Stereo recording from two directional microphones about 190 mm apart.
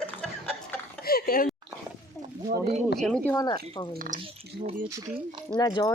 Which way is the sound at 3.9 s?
45° right (ahead or behind).